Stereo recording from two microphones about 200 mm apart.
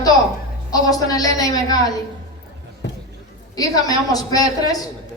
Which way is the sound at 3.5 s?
20° left (ahead or behind).